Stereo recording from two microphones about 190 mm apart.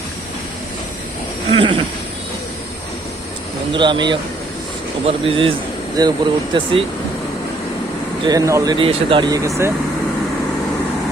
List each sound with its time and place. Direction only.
1.5 s speech: 30° right (ahead or behind)
3.7 s speech: 25° right (ahead or behind)
8.2 s speech: 20° right (ahead or behind)